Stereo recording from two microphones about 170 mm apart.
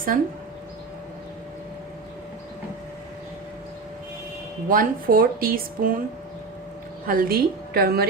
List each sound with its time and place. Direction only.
0.1 s speech: 55° right (ahead or behind)
4.7 s speech: 55° right (ahead or behind)
7.1 s speech: 60° right (ahead or behind)